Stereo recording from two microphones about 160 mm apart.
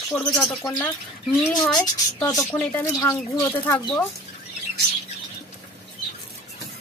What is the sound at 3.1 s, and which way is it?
Speech, 25° left (ahead or behind).